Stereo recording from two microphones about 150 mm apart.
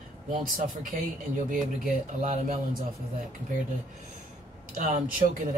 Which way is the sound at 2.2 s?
60° right (ahead or behind).